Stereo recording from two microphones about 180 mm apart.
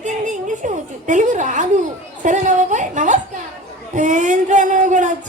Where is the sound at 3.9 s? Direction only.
45° right (ahead or behind).